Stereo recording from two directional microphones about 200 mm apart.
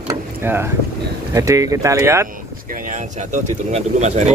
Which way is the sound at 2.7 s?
40° right (ahead or behind).